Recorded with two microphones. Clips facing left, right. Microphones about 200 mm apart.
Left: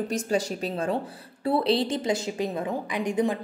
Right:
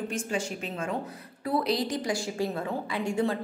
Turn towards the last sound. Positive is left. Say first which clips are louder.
# left 2 dB
turn(degrees=15)  # may be behind; listen again after turning